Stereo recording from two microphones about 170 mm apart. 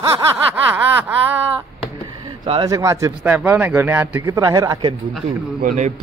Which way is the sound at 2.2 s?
25° right (ahead or behind).